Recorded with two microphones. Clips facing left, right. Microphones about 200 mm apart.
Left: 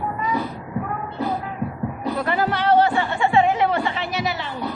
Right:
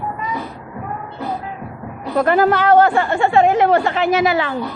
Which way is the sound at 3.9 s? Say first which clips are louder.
Right 10 dB; 90° right.